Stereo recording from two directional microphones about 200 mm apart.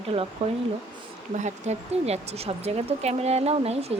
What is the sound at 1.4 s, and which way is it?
Speech, 30° right (ahead or behind).